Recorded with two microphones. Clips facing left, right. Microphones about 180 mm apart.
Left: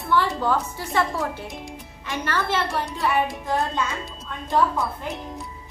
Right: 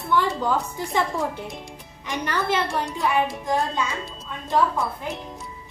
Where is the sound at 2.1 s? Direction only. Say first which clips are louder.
Right 1 dB; 15° right (ahead or behind).